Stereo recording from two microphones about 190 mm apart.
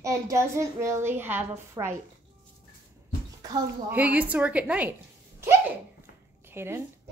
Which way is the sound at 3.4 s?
20° right (ahead or behind).